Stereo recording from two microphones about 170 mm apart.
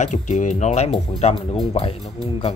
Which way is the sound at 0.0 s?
45° left (ahead or behind).